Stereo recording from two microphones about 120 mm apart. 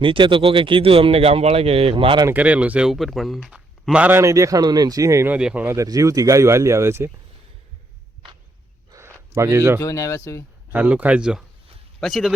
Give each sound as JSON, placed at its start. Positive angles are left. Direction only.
{"t": 0.0, "sound": "speech", "side_deg": -45}
{"t": 2.3, "sound": "speech", "side_deg": -10}
{"t": 3.5, "sound": "a sound", "side_deg": -10}
{"t": 4.2, "sound": "speech", "side_deg": -25}
{"t": 5.3, "sound": "speech", "side_deg": -10}
{"t": 5.6, "sound": "speech", "side_deg": -25}
{"t": 8.9, "sound": "a sound", "side_deg": -25}
{"t": 9.8, "sound": "speech", "side_deg": 30}
{"t": 10.7, "sound": "speech", "side_deg": -15}